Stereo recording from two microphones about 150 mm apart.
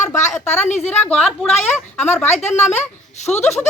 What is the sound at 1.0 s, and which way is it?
Speech, 5° left (ahead or behind).